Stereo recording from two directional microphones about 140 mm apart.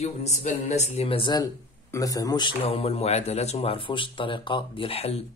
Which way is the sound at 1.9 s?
25° left (ahead or behind).